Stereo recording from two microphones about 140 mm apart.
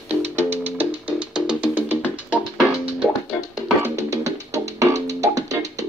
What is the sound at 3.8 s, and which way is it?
Music, 20° right (ahead or behind).